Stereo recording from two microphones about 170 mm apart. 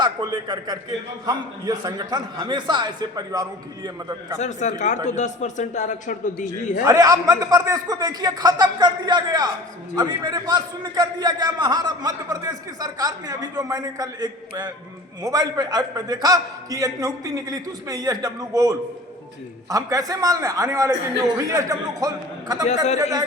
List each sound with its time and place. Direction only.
0.0 s a man's voice: 25° right (ahead or behind)
4.4 s a man's voice: 45° left (ahead or behind)
6.8 s a man's voice: 20° right (ahead or behind)
22.6 s a man's voice: 45° left (ahead or behind)